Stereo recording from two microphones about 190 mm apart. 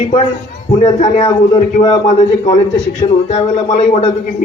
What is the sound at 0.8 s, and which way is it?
A man's voice, 35° left (ahead or behind).